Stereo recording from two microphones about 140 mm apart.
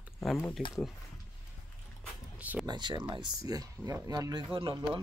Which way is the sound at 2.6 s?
30° right (ahead or behind).